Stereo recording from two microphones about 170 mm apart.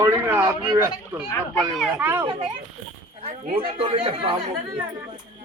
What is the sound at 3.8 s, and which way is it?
Speech, 30° right (ahead or behind).